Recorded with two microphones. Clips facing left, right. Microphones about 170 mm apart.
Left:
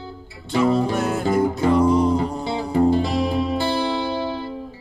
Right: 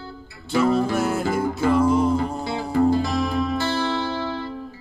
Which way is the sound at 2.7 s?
25° left (ahead or behind).